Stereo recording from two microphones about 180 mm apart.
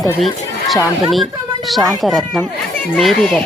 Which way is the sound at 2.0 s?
Centre (ahead or behind).